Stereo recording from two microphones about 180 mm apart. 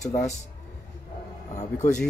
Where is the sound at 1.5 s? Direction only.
40° left (ahead or behind).